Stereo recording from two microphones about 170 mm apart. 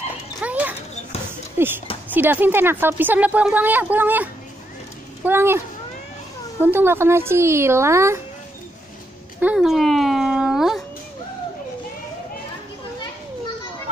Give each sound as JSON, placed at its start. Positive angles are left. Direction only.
{"t": 0.4, "sound": "horse", "side_deg": -10}
{"t": 1.6, "sound": "a woman's voice", "side_deg": -15}
{"t": 6.6, "sound": "a woman's voice", "side_deg": -10}
{"t": 9.4, "sound": "a sound", "side_deg": -5}